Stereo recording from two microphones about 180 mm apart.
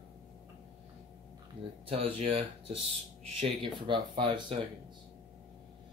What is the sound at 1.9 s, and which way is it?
Speech, 30° right (ahead or behind).